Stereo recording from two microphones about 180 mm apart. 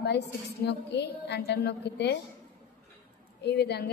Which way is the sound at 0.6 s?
70° left (ahead or behind).